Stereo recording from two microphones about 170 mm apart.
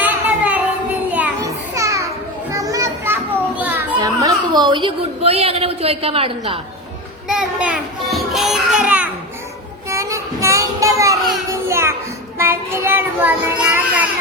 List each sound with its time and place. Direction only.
0.0 s child singing: 10° right (ahead or behind)
1.5 s music: 20° right (ahead or behind)
2.5 s children playing: 20° right (ahead or behind)
3.6 s a child's voice: 10° right (ahead or behind); by 6.6 s 35° right (ahead or behind)
7.3 s child singing: 5° right (ahead or behind)
8.8 s a sound: 10° right (ahead or behind)
9.9 s child singing: 20° right (ahead or behind)
11.7 s music: 15° right (ahead or behind)
12.4 s child singing: 15° right (ahead or behind)